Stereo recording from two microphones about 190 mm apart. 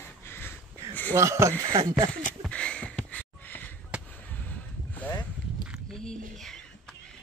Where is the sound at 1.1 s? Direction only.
15° right (ahead or behind).